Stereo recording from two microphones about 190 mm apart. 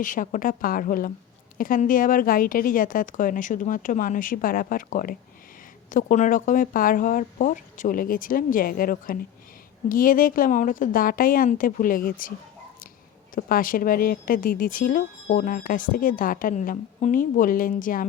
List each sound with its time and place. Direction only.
0.0 s speech: 45° left (ahead or behind)
13.3 s speech: 45° left (ahead or behind)